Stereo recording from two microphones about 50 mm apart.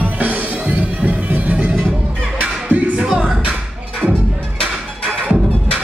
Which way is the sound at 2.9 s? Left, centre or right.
Centre.